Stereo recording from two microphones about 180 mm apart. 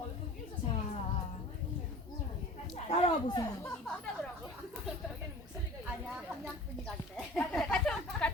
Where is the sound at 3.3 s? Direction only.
20° left (ahead or behind).